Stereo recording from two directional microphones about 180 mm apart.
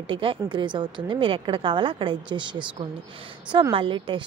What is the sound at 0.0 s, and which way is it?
A woman's voice, 30° right (ahead or behind).